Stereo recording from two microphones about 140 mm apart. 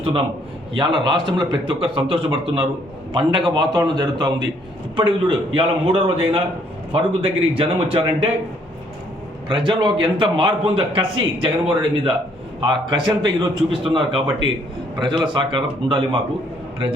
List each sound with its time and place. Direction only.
0.7 s a man's voice: 35° right (ahead or behind)
9.5 s a man's voice: 35° right (ahead or behind)